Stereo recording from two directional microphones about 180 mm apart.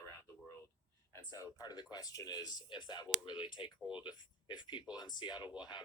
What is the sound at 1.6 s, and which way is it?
Speech, 20° left (ahead or behind).